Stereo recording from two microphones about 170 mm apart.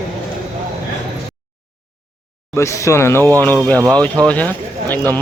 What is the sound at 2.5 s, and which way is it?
Speech, 15° left (ahead or behind).